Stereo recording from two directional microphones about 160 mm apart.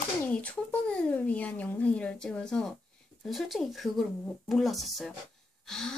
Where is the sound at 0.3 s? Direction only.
10° left (ahead or behind).